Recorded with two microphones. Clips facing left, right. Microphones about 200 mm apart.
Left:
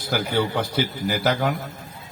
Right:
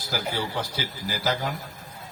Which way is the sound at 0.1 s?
60° left (ahead or behind).